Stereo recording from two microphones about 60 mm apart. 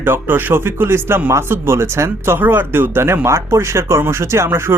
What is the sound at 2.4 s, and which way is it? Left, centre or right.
Speech, right.